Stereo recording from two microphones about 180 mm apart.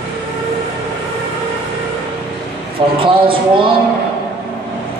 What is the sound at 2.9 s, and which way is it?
Speech, 30° right (ahead or behind).